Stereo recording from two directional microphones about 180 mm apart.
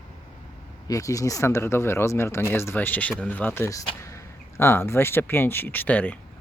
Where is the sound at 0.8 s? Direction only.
20° left (ahead or behind).